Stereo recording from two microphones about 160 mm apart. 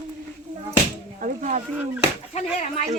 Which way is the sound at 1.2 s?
50° right (ahead or behind).